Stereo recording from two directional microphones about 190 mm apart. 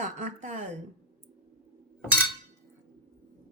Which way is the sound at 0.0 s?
40° right (ahead or behind).